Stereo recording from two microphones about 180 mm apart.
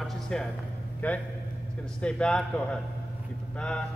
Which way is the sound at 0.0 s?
Centre (ahead or behind).